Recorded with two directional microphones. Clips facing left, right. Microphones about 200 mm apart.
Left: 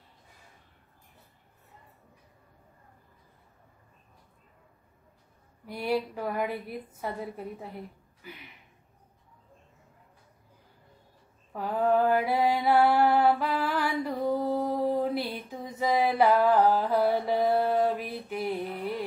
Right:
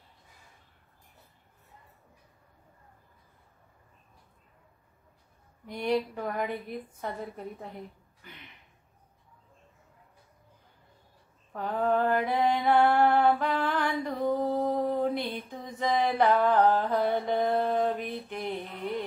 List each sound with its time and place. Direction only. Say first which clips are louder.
5.7 s a woman's voice: right 1 dB; 5° left (ahead or behind)
8.2 s a sound: left 5 dB; 5° left (ahead or behind)
11.5 s mantra: left 2 dB; 5° left (ahead or behind)